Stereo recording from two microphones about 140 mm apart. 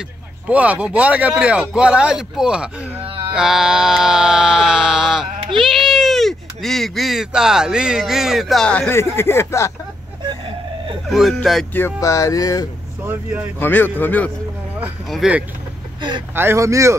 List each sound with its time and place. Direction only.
0.5 s speech: 10° right (ahead or behind)
3.0 s wail: 40° right (ahead or behind)
3.3 s bleat: 5° right (ahead or behind)
5.6 s a sound: centre (ahead or behind)
9.1 s speech: 20° left (ahead or behind)
11.1 s speech: centre (ahead or behind)
11.7 s speech: 20° left (ahead or behind)
13.0 s speech: 10° right (ahead or behind)
13.6 s a man's voice: 15° left (ahead or behind)
15.0 s speech: 5° right (ahead or behind)
16.3 s speech: 20° right (ahead or behind)